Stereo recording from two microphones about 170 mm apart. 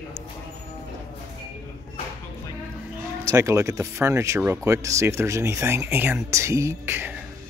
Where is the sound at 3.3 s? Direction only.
15° right (ahead or behind).